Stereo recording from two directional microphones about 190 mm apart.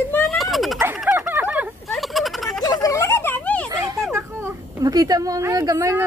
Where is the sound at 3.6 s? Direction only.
15° right (ahead or behind).